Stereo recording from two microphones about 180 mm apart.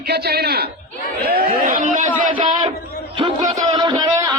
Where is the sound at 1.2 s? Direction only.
55° right (ahead or behind).